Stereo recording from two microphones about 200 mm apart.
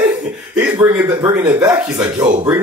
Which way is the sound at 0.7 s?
20° right (ahead or behind).